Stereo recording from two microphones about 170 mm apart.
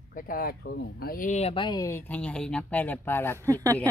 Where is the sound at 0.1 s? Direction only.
55° left (ahead or behind).